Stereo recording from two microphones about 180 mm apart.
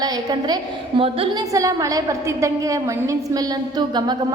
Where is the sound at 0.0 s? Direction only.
20° right (ahead or behind).